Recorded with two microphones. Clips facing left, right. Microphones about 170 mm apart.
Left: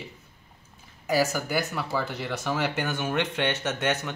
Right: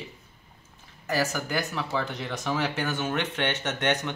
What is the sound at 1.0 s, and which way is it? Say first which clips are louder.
Speech: left 3 dB; 10° left (ahead or behind).